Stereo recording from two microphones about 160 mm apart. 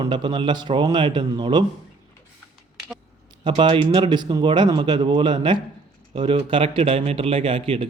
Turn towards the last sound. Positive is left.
turn(degrees=-35)  # may be behind; listen again after turning